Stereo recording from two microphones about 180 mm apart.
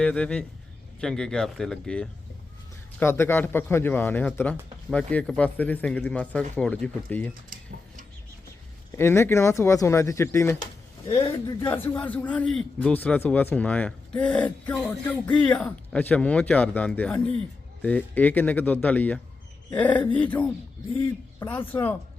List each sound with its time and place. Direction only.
0.0 s a man's voice: 5° left (ahead or behind)
9.0 s a man's voice: 15° left (ahead or behind)